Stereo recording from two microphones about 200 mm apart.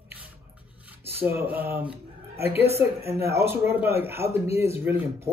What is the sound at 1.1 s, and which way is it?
A man's voice, 10° right (ahead or behind).